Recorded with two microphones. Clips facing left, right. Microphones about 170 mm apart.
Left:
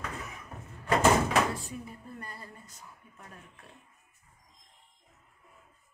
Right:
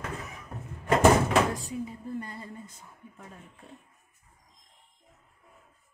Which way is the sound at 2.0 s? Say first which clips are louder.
Right 8 dB; 25° right (ahead or behind).